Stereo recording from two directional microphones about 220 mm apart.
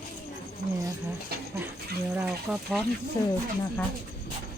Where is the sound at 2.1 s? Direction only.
5° right (ahead or behind).